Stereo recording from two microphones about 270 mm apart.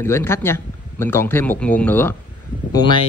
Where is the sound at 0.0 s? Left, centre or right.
Centre.